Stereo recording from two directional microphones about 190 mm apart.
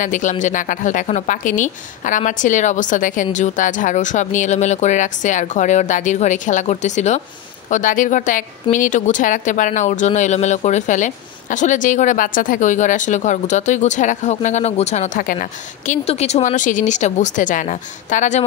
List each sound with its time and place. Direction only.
0.0 s speech: 40° left (ahead or behind)